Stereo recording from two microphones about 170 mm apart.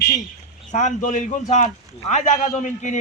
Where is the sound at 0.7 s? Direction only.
45° left (ahead or behind).